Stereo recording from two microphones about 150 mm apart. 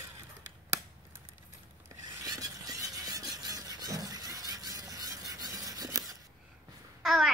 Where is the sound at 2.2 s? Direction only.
25° right (ahead or behind).